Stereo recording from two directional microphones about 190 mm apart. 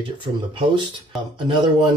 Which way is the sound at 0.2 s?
25° right (ahead or behind).